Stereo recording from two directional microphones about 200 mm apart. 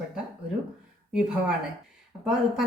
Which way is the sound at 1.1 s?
5° right (ahead or behind).